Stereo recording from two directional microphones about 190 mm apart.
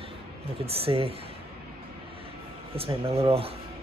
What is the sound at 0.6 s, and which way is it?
Speech, 30° right (ahead or behind).